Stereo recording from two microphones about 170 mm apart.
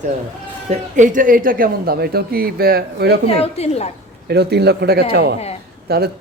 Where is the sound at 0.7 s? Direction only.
50° right (ahead or behind); by 3.2 s 65° right (ahead or behind).